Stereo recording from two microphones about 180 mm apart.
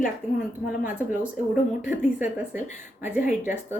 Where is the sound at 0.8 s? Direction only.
5° right (ahead or behind).